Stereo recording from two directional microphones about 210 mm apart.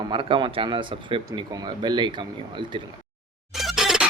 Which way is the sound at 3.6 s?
Centre (ahead or behind).